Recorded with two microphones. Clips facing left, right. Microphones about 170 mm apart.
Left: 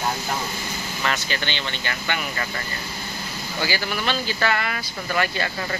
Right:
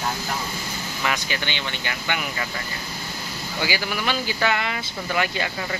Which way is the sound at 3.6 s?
15° right (ahead or behind).